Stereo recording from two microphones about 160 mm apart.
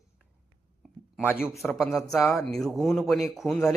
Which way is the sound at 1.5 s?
Centre (ahead or behind).